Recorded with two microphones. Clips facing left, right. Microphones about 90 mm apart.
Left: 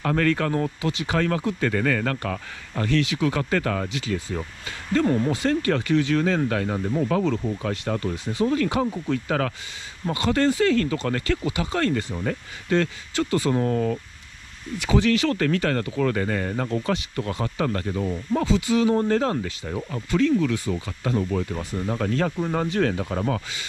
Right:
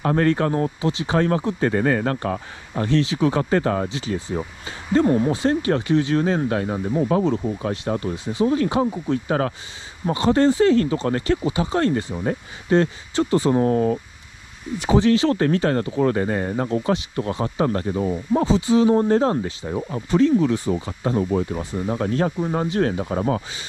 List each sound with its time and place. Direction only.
0.0 s speech: 30° right (ahead or behind)
13.6 s speech: 35° right (ahead or behind)
14.8 s speech: 25° right (ahead or behind); by 23.4 s 40° right (ahead or behind)